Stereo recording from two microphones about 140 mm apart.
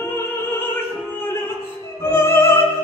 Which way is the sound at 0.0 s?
15° left (ahead or behind).